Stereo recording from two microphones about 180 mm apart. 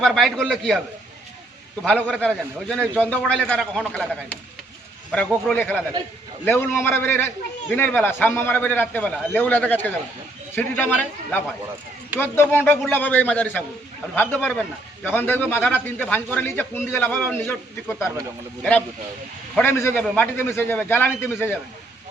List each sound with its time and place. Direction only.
0.0 s a man's voice: centre (ahead or behind)
1.8 s a man's voice: 5° left (ahead or behind)
19.5 s a man's voice: 10° left (ahead or behind)